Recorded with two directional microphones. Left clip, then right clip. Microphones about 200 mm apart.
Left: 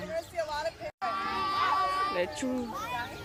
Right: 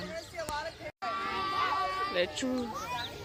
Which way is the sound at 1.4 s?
65° left (ahead or behind).